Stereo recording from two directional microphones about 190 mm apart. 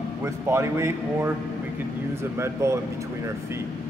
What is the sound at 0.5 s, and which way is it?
Speech, 15° right (ahead or behind).